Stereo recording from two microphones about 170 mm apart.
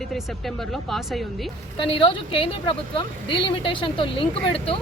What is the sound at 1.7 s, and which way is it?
A woman's voice, 30° left (ahead or behind).